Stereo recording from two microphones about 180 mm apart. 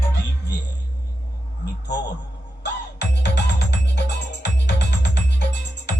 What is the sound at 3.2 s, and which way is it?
Music, 70° left (ahead or behind).